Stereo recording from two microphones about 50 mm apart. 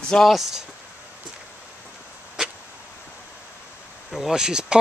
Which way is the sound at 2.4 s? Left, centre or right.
Centre.